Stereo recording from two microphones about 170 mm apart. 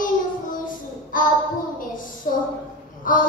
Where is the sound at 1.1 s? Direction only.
55° left (ahead or behind).